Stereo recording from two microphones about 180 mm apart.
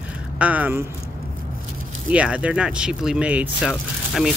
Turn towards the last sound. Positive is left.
turn(degrees=0)  # may be behind; listen again after turning